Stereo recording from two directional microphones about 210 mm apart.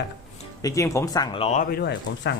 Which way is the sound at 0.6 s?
15° left (ahead or behind).